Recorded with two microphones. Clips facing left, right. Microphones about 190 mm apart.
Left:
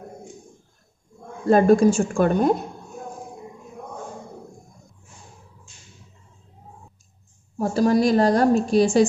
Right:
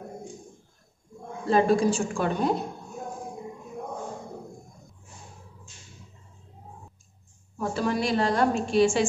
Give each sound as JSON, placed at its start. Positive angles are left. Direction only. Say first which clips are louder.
{"t": 1.5, "sound": "a woman's voice", "louder": "left 6 dB", "side_deg": 50}
{"t": 7.5, "sound": "a woman's voice", "louder": "left 8 dB", "side_deg": 40}